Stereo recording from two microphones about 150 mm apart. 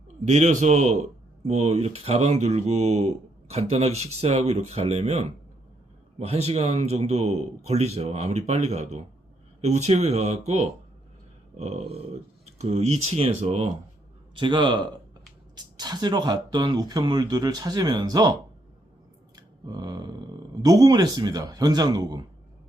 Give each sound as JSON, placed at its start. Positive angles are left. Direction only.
{"t": 0.3, "sound": "speech", "side_deg": -50}
{"t": 14.3, "sound": "a man's voice", "side_deg": -30}
{"t": 19.4, "sound": "speech", "side_deg": -25}